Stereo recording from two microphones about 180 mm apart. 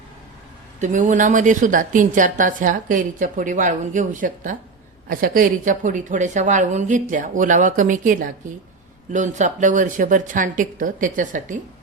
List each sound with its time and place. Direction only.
0.8 s a woman's voice: 45° right (ahead or behind)